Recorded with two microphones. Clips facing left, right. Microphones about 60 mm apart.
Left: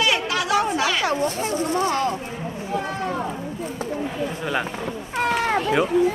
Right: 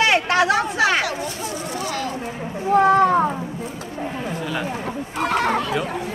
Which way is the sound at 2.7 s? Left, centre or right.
Right.